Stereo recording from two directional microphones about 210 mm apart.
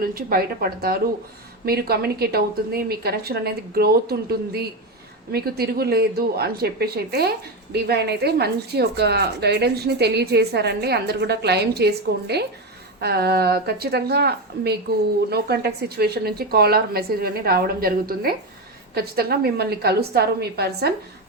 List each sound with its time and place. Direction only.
0.0 s speech: 45° right (ahead or behind)